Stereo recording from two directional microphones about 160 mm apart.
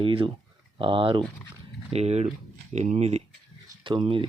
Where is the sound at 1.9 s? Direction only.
40° right (ahead or behind).